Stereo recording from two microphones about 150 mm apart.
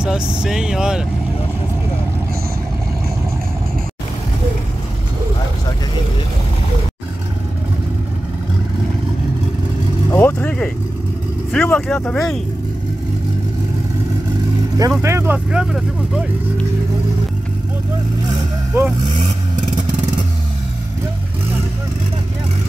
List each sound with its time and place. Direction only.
0.0 s speech: 5° right (ahead or behind)
10.1 s vehicle: 15° left (ahead or behind)
11.5 s speech: 10° left (ahead or behind)
14.8 s speech: 20° right (ahead or behind); by 16.3 s 5° right (ahead or behind)
18.7 s vehicle: 15° right (ahead or behind)